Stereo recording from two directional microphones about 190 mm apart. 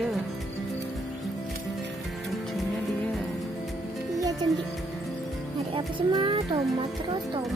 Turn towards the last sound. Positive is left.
turn(degrees=-25)  # may be behind; listen again after turning